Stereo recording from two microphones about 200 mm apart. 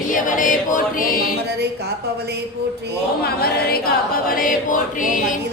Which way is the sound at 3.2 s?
50° left (ahead or behind).